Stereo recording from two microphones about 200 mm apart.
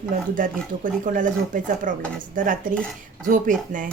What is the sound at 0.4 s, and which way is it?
Speech, 40° right (ahead or behind).